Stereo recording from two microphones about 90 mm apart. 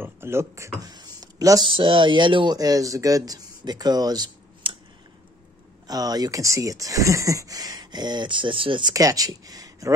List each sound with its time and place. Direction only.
0.0 s speech: 30° right (ahead or behind)
0.7 s a sound: 50° right (ahead or behind)
1.6 s speech: 65° right (ahead or behind); by 4.3 s 45° right (ahead or behind)
4.6 s a sound: 70° right (ahead or behind)
5.9 s speech: 45° right (ahead or behind); by 8.9 s 70° right (ahead or behind)
8.9 s speech: 40° right (ahead or behind)